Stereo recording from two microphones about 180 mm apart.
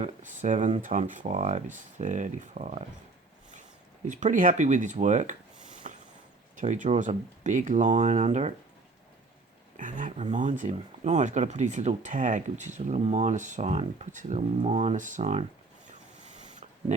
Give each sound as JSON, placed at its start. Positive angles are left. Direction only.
{"t": 0.0, "sound": "speech", "side_deg": -45}
{"t": 4.0, "sound": "speech", "side_deg": -45}
{"t": 5.8, "sound": "a sound", "side_deg": -40}
{"t": 6.6, "sound": "speech", "side_deg": -45}
{"t": 9.7, "sound": "speech", "side_deg": -45}